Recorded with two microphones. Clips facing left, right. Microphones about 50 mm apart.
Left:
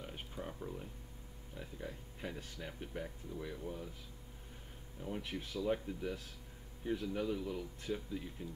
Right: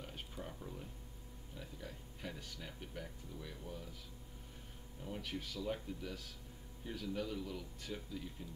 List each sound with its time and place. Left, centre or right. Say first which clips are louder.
0.0 s a sound: left 3 dB; centre
1.6 s speech: left 4 dB; left
5.2 s a man's voice: left 4 dB; left